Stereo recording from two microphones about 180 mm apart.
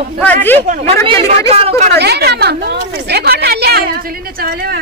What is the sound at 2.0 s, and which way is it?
A woman's voice, 65° right (ahead or behind).